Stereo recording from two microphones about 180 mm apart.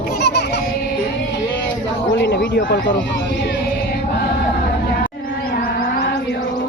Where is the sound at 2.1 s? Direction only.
80° left.